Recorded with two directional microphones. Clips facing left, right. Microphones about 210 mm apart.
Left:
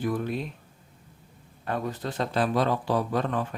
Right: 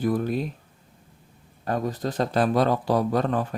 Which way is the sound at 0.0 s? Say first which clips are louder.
Right 4 dB; 40° right (ahead or behind).